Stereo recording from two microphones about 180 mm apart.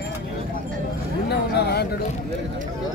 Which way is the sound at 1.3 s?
65° left (ahead or behind).